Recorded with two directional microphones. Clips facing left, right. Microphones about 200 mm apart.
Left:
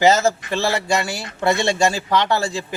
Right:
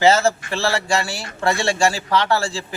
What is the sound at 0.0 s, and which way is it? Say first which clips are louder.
A man's voice: even; 15° left (ahead or behind).